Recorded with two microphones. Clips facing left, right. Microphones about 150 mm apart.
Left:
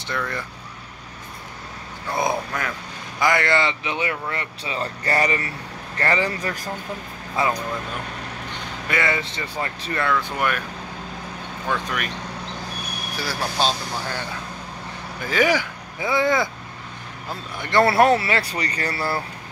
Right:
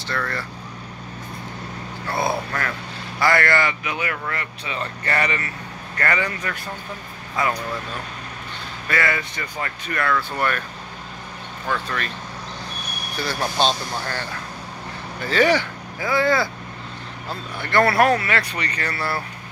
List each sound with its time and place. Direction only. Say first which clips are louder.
0.1 s speech: even; 20° left (ahead or behind)
2.0 s speech: even; 15° left (ahead or behind)
8.8 s speech: even; 20° left (ahead or behind)
10.1 s speech: even; 10° left (ahead or behind)
11.7 s speech: even; 15° left (ahead or behind)
13.6 s speech: right 2 dB; 10° left (ahead or behind)
15.2 s speech: right 2 dB; 10° left (ahead or behind); by 19.2 s 30° left (ahead or behind)